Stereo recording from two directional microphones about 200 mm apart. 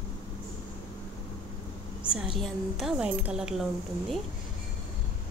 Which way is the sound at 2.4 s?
Centre (ahead or behind).